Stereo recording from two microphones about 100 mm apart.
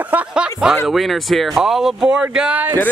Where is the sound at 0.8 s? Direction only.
Centre (ahead or behind).